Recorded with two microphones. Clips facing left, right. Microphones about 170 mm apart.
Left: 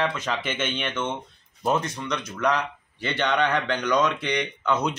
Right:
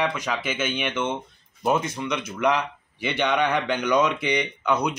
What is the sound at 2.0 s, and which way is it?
Speech, 10° right (ahead or behind).